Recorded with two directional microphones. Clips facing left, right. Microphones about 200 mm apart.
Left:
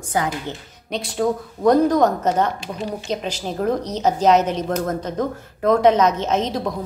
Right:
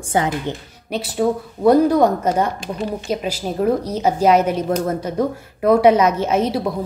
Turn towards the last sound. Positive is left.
turn(degrees=-10)  # may be behind; listen again after turning